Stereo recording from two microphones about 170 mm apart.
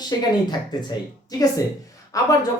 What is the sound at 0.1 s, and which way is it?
Speech, 20° left (ahead or behind).